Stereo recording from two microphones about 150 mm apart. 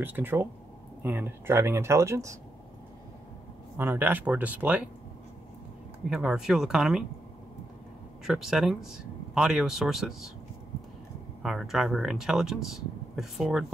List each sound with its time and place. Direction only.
0.0 s speech: 15° right (ahead or behind)
3.7 s speech: 15° right (ahead or behind)
6.0 s speech: 5° right (ahead or behind)
8.3 s speech: centre (ahead or behind)
11.4 s speech: centre (ahead or behind)